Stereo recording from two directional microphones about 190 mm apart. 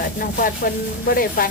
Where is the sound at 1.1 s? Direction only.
50° left (ahead or behind).